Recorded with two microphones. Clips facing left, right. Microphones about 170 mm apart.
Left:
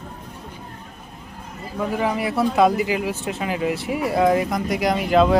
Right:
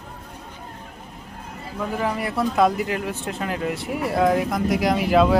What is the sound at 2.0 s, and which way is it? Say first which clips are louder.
Speech: left 2 dB; 5° left (ahead or behind).